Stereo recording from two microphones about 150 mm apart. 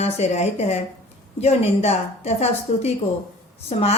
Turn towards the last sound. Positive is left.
turn(degrees=45)  # may be behind; listen again after turning